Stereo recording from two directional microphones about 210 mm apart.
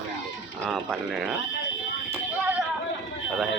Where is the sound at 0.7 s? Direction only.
Centre (ahead or behind).